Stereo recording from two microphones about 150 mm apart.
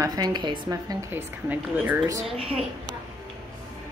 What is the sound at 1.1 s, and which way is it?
Speech, 10° right (ahead or behind).